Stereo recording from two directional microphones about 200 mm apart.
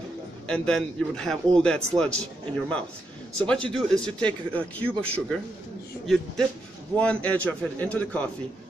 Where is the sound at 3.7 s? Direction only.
5° left (ahead or behind).